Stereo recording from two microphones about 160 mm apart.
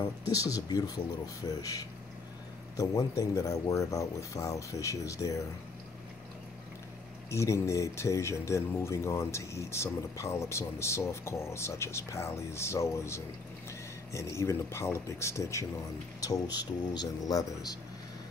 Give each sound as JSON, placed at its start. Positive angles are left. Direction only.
{"t": 0.3, "sound": "speech", "side_deg": 20}
{"t": 7.2, "sound": "speech", "side_deg": 20}